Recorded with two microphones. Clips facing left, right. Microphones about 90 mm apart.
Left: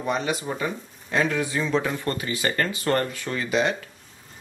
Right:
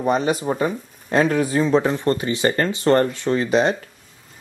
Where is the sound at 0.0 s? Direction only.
40° right (ahead or behind).